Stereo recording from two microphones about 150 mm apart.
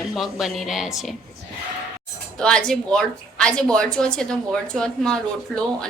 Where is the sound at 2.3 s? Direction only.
5° left (ahead or behind).